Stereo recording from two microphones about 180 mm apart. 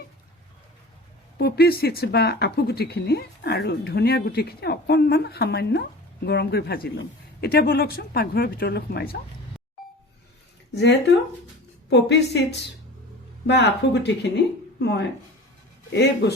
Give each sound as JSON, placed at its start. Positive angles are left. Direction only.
{"t": 1.4, "sound": "speech", "side_deg": 60}
{"t": 10.8, "sound": "speech", "side_deg": 70}
{"t": 13.5, "sound": "speech", "side_deg": 70}